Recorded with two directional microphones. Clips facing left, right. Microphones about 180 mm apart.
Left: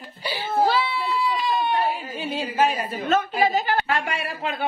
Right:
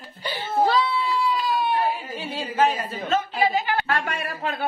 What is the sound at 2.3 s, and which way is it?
Speech, 15° left (ahead or behind).